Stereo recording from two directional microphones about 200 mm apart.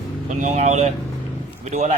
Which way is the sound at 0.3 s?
40° right (ahead or behind).